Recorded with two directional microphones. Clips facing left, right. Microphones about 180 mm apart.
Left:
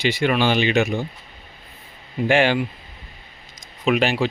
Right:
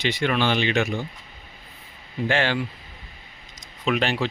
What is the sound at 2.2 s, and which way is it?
Speech, 15° left (ahead or behind).